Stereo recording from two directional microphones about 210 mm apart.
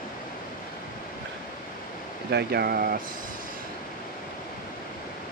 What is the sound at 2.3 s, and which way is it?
Speech, 50° right (ahead or behind).